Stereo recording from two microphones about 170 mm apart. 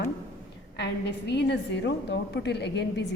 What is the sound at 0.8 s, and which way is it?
A woman's voice, 90° left.